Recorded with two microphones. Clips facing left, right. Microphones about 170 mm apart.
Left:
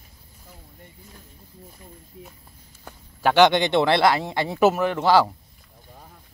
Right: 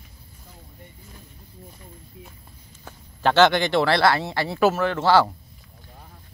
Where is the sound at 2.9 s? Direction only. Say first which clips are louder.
Even; 10° left (ahead or behind).